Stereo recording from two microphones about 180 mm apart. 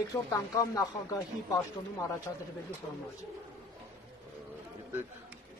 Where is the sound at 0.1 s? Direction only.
20° left (ahead or behind).